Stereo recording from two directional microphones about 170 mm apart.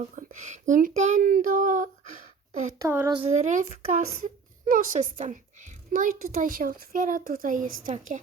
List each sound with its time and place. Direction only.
0.2 s a woman's voice: 45° right (ahead or behind)
2.8 s speech: 15° right (ahead or behind)
3.2 s a woman's voice: 40° right (ahead or behind)